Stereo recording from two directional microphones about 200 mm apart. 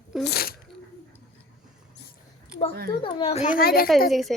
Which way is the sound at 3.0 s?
25° left (ahead or behind).